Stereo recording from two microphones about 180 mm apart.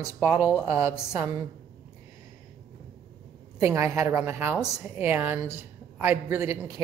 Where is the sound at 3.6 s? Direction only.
15° right (ahead or behind).